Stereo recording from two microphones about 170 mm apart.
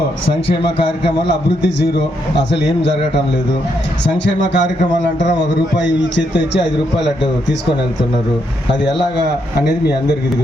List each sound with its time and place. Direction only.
4.0 s a man's voice: 90° left
9.6 s speech: 75° left (ahead or behind)